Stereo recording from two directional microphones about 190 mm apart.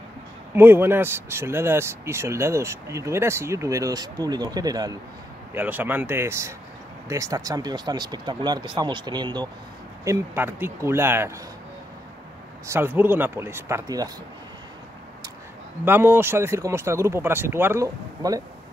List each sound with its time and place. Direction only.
0.6 s speech: 10° right (ahead or behind)
5.5 s speech: 10° right (ahead or behind)
12.6 s speech: 10° right (ahead or behind)
15.8 s speech: 10° right (ahead or behind)